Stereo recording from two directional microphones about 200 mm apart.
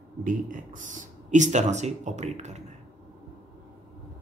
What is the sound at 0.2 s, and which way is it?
Speech, 40° right (ahead or behind).